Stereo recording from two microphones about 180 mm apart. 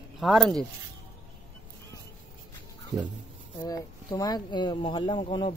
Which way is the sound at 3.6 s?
20° left (ahead or behind).